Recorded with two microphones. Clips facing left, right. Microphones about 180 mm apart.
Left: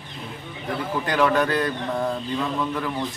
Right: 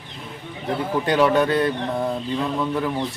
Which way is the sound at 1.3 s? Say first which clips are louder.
Right 3 dB; 25° right (ahead or behind).